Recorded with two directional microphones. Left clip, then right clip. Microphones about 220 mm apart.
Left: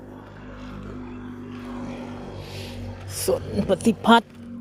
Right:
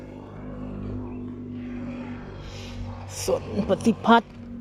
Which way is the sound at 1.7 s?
50° left (ahead or behind).